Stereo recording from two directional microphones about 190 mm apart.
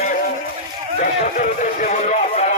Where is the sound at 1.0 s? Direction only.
45° left (ahead or behind).